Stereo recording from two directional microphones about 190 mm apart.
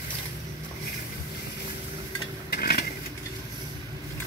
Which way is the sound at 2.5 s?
55° left (ahead or behind).